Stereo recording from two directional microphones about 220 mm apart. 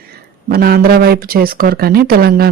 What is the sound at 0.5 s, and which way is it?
Speech, 45° right (ahead or behind).